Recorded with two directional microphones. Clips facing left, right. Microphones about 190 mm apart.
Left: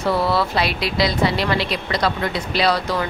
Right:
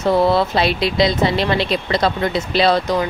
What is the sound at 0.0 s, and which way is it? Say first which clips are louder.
Speech: right 4 dB; 20° right (ahead or behind).